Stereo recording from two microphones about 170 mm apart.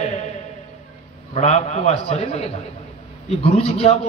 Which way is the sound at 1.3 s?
40° left (ahead or behind).